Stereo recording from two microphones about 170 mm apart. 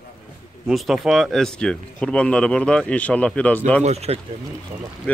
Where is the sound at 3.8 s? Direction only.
40° right (ahead or behind).